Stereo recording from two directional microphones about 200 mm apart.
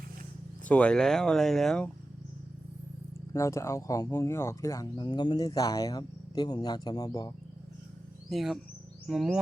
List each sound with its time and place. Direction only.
0.7 s speech: 5° left (ahead or behind)
3.3 s speech: 15° left (ahead or behind)
8.3 s speech: centre (ahead or behind)